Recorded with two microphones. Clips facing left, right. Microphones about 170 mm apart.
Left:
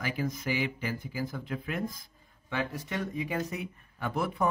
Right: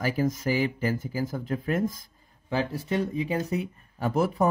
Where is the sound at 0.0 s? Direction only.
45° right (ahead or behind).